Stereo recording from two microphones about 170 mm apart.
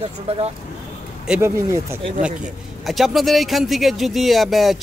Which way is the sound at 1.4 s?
15° right (ahead or behind).